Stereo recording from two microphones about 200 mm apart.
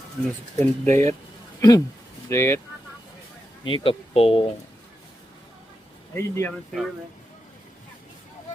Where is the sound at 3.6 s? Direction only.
25° left (ahead or behind).